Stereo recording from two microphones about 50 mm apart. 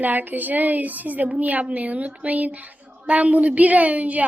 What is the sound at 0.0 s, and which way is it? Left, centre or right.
A woman's voice, right.